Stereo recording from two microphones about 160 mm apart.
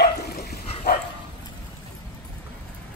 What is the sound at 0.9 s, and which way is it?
Dog, 90° left.